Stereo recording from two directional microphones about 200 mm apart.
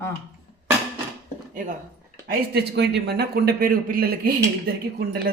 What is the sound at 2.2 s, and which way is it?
A man's voice, 50° right (ahead or behind).